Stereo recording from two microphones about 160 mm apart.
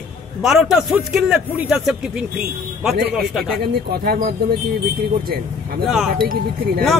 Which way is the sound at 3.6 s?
75° right (ahead or behind).